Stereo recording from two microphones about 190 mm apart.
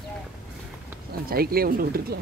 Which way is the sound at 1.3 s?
50° right (ahead or behind).